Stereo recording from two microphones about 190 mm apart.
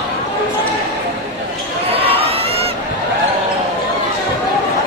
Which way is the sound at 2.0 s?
30° right (ahead or behind).